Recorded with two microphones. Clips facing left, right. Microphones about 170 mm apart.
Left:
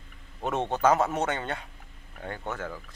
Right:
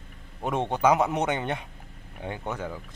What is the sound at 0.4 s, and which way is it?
A man's voice, 15° right (ahead or behind).